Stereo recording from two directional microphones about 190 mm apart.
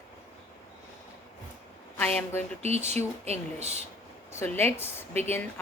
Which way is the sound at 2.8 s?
35° right (ahead or behind).